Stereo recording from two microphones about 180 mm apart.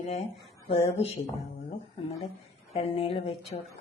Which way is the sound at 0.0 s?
40° left (ahead or behind).